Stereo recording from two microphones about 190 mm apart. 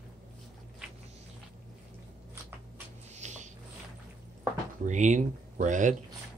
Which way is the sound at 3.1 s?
40° right (ahead or behind).